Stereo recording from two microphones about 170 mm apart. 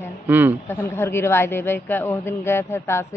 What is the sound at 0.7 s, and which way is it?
A woman's voice, 15° left (ahead or behind).